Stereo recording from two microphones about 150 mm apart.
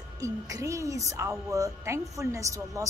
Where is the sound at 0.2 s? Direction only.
20° right (ahead or behind).